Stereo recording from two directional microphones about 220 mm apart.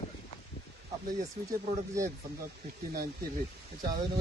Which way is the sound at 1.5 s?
15° right (ahead or behind).